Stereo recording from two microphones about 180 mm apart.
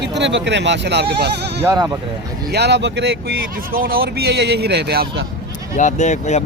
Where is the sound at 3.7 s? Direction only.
55° right (ahead or behind).